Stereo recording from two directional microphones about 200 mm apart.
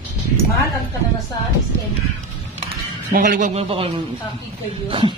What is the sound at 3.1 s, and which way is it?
A man's voice, 45° right (ahead or behind).